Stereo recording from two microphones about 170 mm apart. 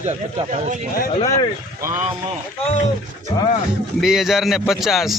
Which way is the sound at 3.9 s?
Centre (ahead or behind).